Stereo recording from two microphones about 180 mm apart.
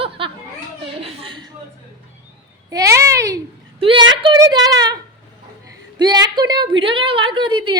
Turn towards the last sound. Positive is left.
turn(degrees=-25)  # may be behind; listen again after turning